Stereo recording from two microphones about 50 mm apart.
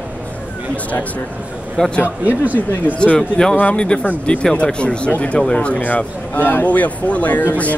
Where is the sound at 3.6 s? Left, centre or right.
Left.